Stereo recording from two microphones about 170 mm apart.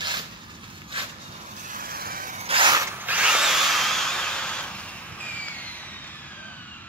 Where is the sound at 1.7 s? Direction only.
60° right (ahead or behind).